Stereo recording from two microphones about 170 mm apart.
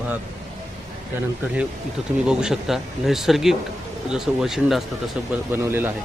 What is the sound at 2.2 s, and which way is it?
Speech, 5° right (ahead or behind).